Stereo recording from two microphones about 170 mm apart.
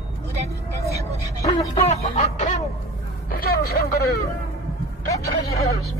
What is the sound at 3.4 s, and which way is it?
Vehicle, 65° left (ahead or behind).